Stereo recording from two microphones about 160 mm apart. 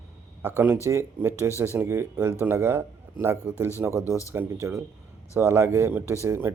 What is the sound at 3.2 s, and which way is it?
Speech, 30° left (ahead or behind).